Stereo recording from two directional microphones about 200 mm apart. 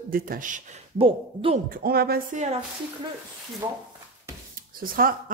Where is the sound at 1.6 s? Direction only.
45° right (ahead or behind).